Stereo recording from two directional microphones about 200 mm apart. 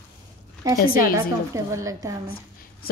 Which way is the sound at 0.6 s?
15° right (ahead or behind).